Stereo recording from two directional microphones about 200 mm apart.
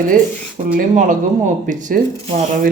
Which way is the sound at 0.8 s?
40° right (ahead or behind).